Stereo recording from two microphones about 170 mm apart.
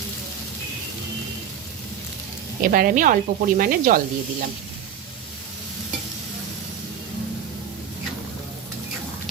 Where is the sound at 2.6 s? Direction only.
55° right (ahead or behind).